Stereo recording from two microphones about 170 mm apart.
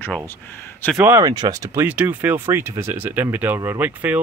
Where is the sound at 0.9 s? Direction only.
15° right (ahead or behind).